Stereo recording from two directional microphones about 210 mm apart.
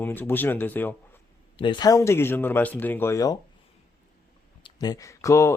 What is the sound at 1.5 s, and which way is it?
Speech, 20° left (ahead or behind).